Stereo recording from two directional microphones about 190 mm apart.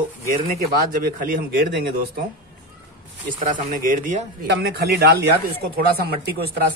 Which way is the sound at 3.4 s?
45° right (ahead or behind).